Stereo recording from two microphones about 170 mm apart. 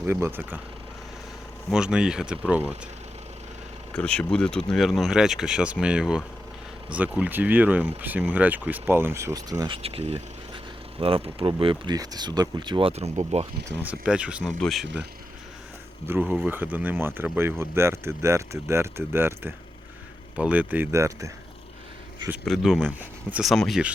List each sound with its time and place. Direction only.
0.0 s speech: 15° right (ahead or behind)
1.7 s speech: 5° right (ahead or behind)
3.9 s speech: 5° left (ahead or behind); by 13.5 s 40° right (ahead or behind)
13.7 s speech: 10° right (ahead or behind)
16.0 s speech: 10° right (ahead or behind)
22.4 s speech: centre (ahead or behind)